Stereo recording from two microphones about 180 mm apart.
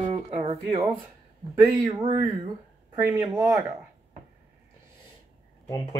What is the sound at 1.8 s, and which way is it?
Speech, 25° right (ahead or behind).